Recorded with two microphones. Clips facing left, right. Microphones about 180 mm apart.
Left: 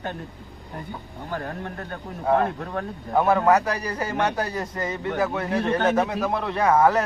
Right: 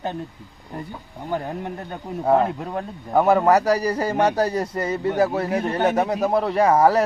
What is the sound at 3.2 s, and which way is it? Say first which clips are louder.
A man's voice: right 3 dB; 35° right (ahead or behind).